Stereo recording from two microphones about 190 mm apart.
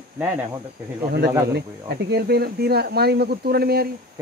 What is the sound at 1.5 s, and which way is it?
Speech, 55° right (ahead or behind).